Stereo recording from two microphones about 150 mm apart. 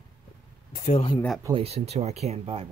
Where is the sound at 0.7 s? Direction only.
60° left (ahead or behind).